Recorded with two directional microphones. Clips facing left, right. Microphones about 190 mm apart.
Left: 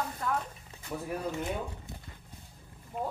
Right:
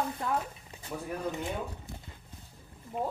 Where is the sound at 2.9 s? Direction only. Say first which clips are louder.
Right 2 dB; centre (ahead or behind).